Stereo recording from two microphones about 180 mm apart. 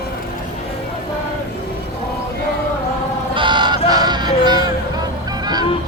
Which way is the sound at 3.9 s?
20° right (ahead or behind).